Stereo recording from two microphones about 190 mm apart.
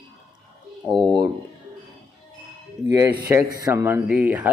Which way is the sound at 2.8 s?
15° right (ahead or behind).